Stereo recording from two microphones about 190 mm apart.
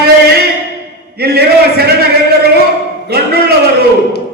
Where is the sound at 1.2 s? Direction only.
55° right (ahead or behind).